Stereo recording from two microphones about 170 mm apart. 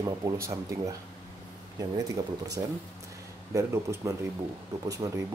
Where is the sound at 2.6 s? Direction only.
20° right (ahead or behind).